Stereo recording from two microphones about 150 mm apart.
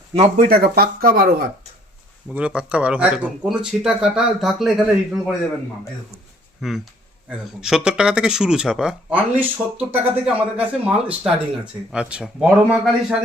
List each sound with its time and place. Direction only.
0.3 s speech: 75° right (ahead or behind)
2.3 s speech: 10° right (ahead or behind)
6.6 s speech: centre (ahead or behind)